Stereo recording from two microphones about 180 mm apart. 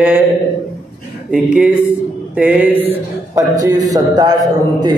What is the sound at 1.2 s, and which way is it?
Speech, 5° right (ahead or behind).